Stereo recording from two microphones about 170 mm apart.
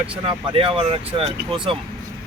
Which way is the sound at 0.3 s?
35° right (ahead or behind).